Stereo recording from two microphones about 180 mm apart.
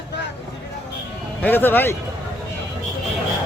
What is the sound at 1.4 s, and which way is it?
Speech, 10° left (ahead or behind).